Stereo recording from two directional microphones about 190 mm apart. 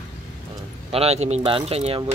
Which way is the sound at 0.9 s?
35° right (ahead or behind).